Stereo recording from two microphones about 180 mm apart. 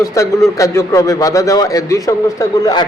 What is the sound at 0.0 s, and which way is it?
A man's voice, 15° left (ahead or behind).